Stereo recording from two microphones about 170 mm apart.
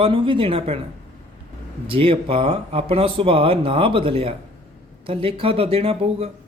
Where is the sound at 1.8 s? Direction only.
30° right (ahead or behind).